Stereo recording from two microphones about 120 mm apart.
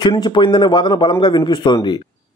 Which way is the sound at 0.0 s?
35° left (ahead or behind).